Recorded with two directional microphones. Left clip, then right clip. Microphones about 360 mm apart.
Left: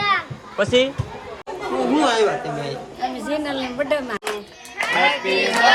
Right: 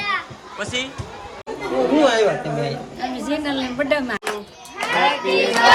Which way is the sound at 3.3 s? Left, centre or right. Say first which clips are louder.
Right 3 dB; centre.